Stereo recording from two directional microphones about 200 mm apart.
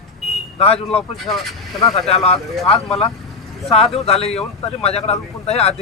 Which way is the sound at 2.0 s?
30° left (ahead or behind).